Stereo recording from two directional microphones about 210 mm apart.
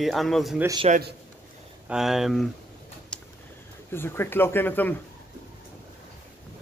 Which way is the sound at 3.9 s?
10° left (ahead or behind).